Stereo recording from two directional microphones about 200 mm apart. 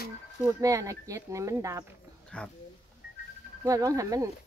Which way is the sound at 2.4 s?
5° left (ahead or behind).